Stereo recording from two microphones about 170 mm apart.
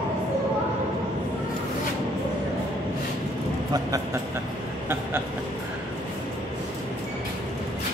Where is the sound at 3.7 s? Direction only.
20° right (ahead or behind).